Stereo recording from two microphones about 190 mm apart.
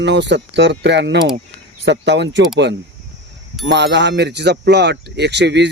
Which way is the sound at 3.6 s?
65° right (ahead or behind).